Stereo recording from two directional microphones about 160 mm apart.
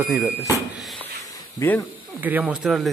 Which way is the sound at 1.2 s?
15° left (ahead or behind).